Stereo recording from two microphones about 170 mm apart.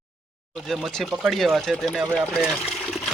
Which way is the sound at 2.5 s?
Centre (ahead or behind).